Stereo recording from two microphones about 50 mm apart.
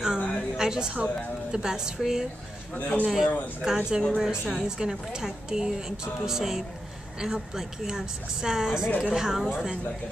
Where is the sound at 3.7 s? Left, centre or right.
Centre.